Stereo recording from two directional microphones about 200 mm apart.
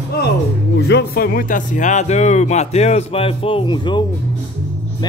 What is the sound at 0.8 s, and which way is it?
Speech, 60° left (ahead or behind).